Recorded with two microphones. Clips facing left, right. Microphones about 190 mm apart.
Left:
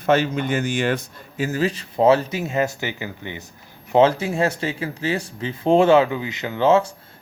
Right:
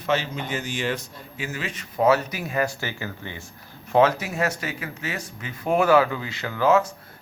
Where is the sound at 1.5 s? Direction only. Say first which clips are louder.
Left 12 dB; 35° left (ahead or behind).